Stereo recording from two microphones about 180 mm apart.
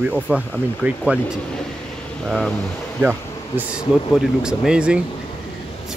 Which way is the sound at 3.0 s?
10° right (ahead or behind).